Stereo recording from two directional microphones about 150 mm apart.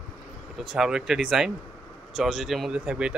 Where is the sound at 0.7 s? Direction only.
5° right (ahead or behind).